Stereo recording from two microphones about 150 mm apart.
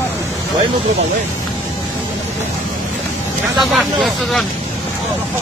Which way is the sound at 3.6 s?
Centre (ahead or behind).